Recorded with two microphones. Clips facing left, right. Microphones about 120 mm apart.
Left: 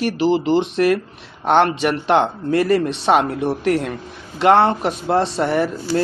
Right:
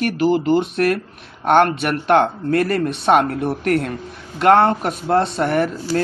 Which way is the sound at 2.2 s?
50° right (ahead or behind).